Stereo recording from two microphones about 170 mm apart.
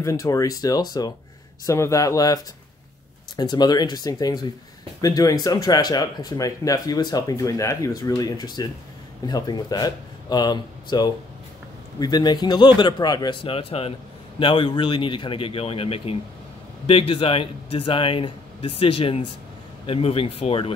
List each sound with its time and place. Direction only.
0.0 s speech: 20° left (ahead or behind)